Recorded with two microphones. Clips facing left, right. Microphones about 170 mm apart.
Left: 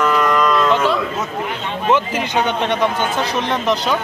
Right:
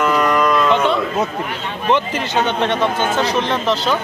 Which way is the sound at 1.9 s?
10° left (ahead or behind).